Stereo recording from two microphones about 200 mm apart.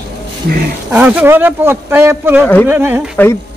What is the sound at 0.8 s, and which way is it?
Speech, 5° right (ahead or behind).